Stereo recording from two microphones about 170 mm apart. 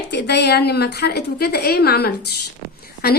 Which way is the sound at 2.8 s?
65° left (ahead or behind).